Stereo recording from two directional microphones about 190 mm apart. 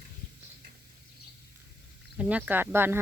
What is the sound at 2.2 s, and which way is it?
Speech, 5° right (ahead or behind).